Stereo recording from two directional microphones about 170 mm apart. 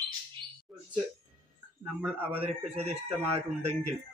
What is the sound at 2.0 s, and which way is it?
Speech, 10° right (ahead or behind).